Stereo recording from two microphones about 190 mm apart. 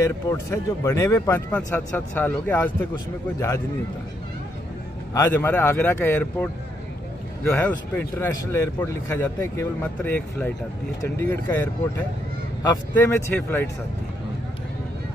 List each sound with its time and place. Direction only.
0.0 s speech: 15° left (ahead or behind)
5.1 s speech: 15° left (ahead or behind)
7.4 s speech: 10° left (ahead or behind)